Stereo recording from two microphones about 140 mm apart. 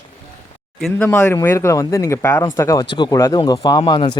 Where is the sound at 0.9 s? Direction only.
15° left (ahead or behind).